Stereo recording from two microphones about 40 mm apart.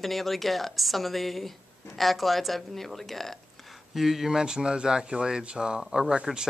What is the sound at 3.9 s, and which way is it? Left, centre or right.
Speech, centre.